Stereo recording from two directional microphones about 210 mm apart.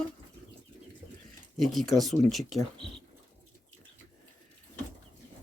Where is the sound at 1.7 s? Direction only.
Centre (ahead or behind).